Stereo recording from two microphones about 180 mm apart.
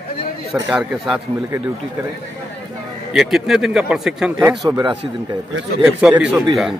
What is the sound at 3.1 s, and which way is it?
Speech, centre (ahead or behind).